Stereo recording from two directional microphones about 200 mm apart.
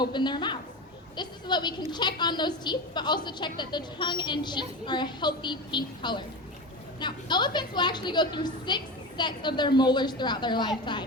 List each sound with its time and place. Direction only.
0.0 s a woman's voice: 20° left (ahead or behind)